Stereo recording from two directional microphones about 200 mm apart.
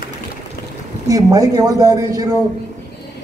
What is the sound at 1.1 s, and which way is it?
A man's voice, 15° right (ahead or behind).